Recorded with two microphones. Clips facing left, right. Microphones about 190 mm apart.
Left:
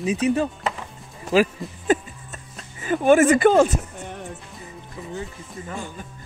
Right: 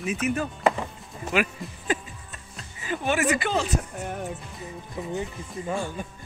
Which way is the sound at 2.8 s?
50° left (ahead or behind).